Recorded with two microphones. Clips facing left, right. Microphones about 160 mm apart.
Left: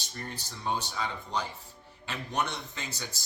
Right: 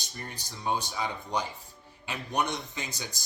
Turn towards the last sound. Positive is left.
turn(degrees=-15)  # may be behind; listen again after turning